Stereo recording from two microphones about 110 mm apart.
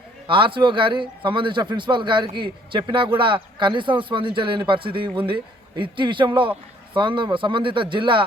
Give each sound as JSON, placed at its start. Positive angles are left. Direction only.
{"t": 0.3, "sound": "a man's voice", "side_deg": -50}